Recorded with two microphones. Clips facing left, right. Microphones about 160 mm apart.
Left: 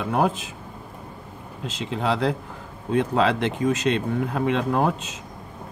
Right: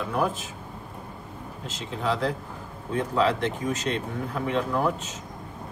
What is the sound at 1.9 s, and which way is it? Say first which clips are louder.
Speech: left 3 dB; 85° left.